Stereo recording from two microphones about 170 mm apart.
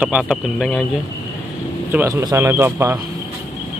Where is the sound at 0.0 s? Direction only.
5° right (ahead or behind).